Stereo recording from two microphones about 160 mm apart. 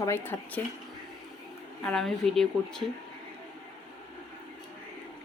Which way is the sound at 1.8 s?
5° left (ahead or behind).